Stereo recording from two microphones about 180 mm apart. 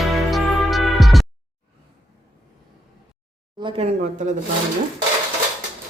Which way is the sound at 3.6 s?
30° right (ahead or behind).